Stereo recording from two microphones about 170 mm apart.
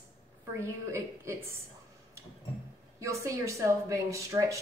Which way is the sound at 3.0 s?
20° right (ahead or behind).